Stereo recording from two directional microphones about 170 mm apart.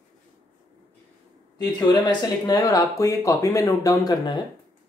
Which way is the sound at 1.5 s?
25° left (ahead or behind).